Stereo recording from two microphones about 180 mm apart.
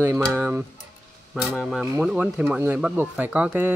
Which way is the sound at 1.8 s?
10° right (ahead or behind).